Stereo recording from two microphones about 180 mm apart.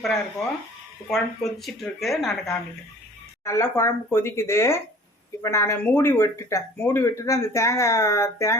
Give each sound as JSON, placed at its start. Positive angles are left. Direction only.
{"t": 1.1, "sound": "speech", "side_deg": 0}
{"t": 3.4, "sound": "speech", "side_deg": 15}